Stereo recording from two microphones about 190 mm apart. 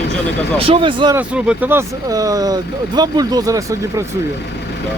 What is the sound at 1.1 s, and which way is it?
Speech, 5° right (ahead or behind).